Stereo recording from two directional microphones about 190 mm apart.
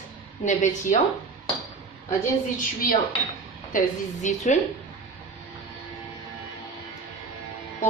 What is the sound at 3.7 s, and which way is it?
Speech, 40° left (ahead or behind).